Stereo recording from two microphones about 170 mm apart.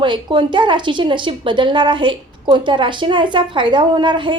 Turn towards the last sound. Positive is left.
turn(degrees=-30)  # may be behind; listen again after turning